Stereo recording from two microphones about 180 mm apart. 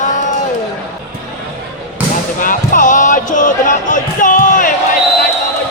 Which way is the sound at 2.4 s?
50° left (ahead or behind).